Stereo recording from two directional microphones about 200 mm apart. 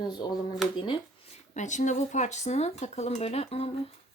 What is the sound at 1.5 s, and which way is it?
Speech, 35° left (ahead or behind).